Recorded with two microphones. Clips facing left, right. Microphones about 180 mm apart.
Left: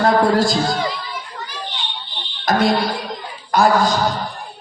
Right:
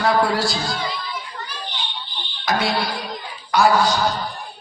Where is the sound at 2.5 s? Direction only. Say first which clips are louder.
Left 5 dB; 45° left (ahead or behind).